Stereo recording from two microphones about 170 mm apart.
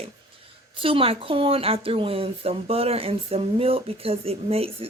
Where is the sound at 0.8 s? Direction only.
30° right (ahead or behind).